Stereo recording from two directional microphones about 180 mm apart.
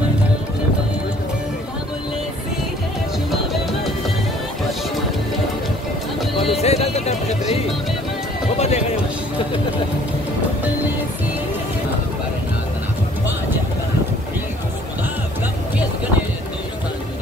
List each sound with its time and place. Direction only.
6.6 s music: 35° left (ahead or behind)